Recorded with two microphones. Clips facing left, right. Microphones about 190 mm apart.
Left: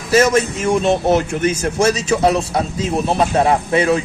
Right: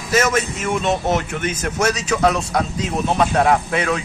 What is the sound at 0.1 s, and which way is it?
A man's voice, 35° left (ahead or behind).